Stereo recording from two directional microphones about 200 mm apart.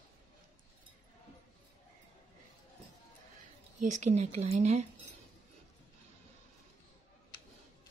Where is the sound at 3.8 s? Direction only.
35° right (ahead or behind).